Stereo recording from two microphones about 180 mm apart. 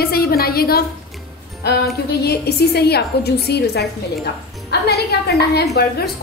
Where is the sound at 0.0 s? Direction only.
60° left (ahead or behind).